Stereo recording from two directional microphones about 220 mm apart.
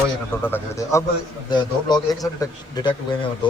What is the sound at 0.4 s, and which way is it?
A man's voice, 10° left (ahead or behind).